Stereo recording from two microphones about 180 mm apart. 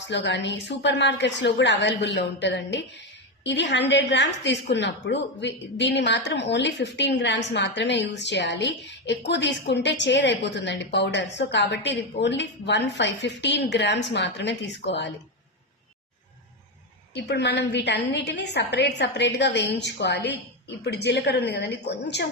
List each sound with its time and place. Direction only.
0.0 s a woman's voice: 80° left
17.2 s a woman's voice: 70° left (ahead or behind)